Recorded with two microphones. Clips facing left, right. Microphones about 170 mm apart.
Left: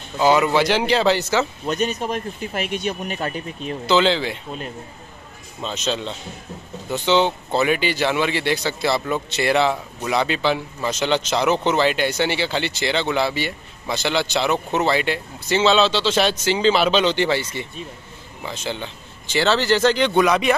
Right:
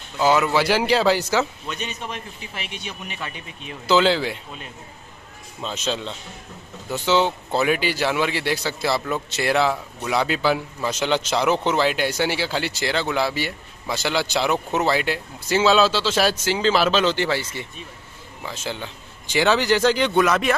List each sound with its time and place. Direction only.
0.2 s speech: 5° right (ahead or behind)
1.7 s a man's voice: 40° left (ahead or behind)
3.8 s speech: 5° right (ahead or behind)
5.6 s speech: 5° right (ahead or behind)